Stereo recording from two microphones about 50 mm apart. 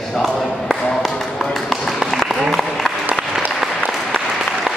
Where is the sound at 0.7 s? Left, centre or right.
Centre.